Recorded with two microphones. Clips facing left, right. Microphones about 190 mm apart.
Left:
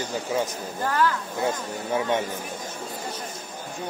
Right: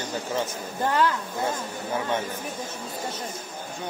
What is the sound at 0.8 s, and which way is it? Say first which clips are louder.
Speech: right 1 dB; 20° right (ahead or behind).